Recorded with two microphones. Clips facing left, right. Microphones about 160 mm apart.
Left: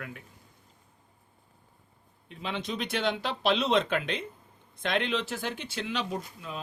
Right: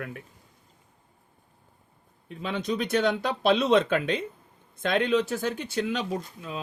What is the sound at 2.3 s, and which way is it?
Speech, 45° right (ahead or behind).